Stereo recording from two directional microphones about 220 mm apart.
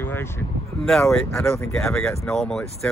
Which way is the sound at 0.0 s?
10° left (ahead or behind).